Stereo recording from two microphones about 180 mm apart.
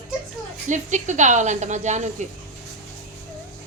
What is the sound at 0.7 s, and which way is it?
Speech, 40° right (ahead or behind).